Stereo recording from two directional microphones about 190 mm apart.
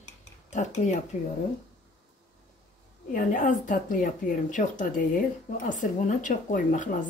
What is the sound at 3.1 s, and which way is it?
Speech, 45° left (ahead or behind).